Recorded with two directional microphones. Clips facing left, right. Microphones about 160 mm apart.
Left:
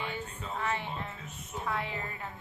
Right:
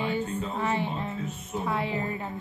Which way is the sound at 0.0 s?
25° right (ahead or behind).